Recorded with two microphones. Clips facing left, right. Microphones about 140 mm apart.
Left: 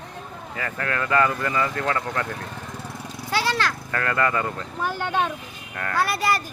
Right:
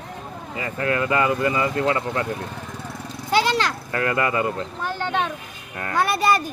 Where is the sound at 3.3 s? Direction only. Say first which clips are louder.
Right 4 dB; 20° right (ahead or behind).